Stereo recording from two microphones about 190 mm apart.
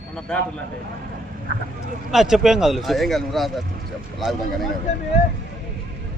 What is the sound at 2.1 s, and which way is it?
A man's voice, centre (ahead or behind).